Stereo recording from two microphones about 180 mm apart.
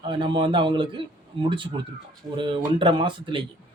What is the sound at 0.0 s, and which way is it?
Speech, 25° right (ahead or behind).